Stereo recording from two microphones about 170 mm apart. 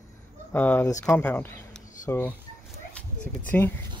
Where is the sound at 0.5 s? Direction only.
10° left (ahead or behind).